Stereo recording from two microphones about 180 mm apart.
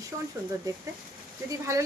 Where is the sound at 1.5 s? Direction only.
15° right (ahead or behind).